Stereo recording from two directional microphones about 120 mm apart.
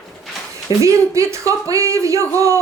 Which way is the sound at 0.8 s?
25° right (ahead or behind).